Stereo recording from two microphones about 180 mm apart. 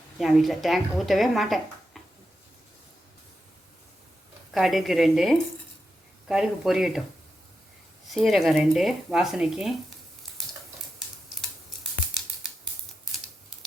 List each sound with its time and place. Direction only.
0.2 s speech: centre (ahead or behind)
4.5 s speech: centre (ahead or behind)
8.0 s speech: centre (ahead or behind)
10.4 s a sound: centre (ahead or behind)